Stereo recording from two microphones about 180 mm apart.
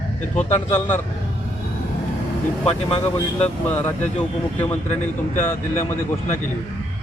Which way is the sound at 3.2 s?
10° left (ahead or behind).